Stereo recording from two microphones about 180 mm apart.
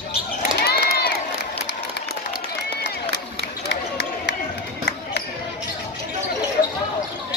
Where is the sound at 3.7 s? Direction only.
85° left.